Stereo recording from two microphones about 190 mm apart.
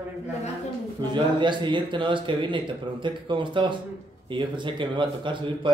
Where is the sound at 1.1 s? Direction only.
25° right (ahead or behind).